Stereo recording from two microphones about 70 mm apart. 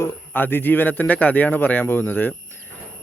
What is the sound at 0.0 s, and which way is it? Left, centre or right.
Speech, left.